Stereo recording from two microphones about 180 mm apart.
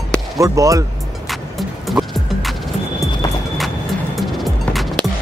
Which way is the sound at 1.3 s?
Centre (ahead or behind).